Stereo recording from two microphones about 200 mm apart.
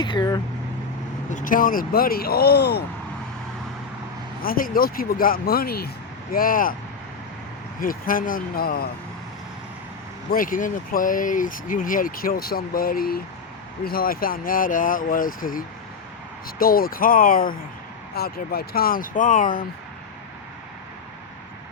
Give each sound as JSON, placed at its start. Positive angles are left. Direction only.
{"t": 0.0, "sound": "speech", "side_deg": 20}
{"t": 1.3, "sound": "speech", "side_deg": 40}
{"t": 4.4, "sound": "speech", "side_deg": 45}
{"t": 7.8, "sound": "speech", "side_deg": 45}
{"t": 10.3, "sound": "speech", "side_deg": 45}